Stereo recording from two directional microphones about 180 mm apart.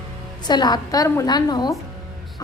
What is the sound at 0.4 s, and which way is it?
A woman's voice, 25° left (ahead or behind).